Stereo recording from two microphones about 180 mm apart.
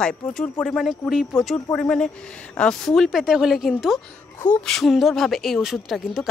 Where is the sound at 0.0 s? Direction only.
5° left (ahead or behind).